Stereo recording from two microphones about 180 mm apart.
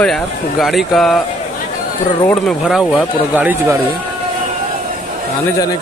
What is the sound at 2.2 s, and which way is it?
Speech, 10° left (ahead or behind).